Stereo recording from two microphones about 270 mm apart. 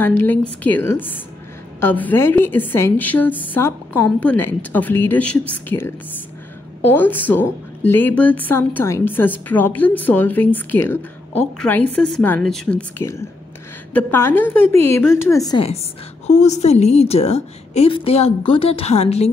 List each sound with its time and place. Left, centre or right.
0.0 s a woman's voice: centre; by 19.3 s left